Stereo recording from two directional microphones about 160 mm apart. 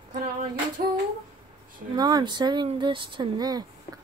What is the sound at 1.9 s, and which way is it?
Speech, 25° right (ahead or behind).